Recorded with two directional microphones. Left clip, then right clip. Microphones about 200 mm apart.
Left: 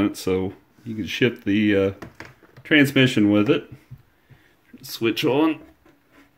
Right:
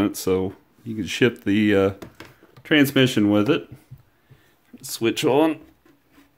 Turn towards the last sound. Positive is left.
turn(degrees=-15)  # may be behind; listen again after turning